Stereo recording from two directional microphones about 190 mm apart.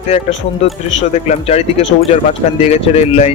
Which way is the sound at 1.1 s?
35° left (ahead or behind).